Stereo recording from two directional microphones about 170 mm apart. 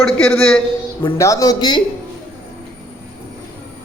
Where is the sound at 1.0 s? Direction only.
20° left (ahead or behind).